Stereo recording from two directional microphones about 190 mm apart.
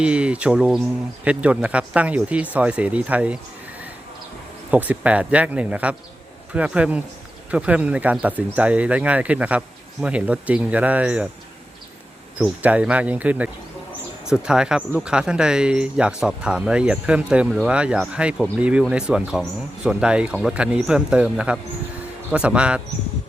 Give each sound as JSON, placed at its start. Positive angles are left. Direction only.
{"t": 0.0, "sound": "speech", "side_deg": -5}
{"t": 4.7, "sound": "speech", "side_deg": -10}
{"t": 12.4, "sound": "speech", "side_deg": -5}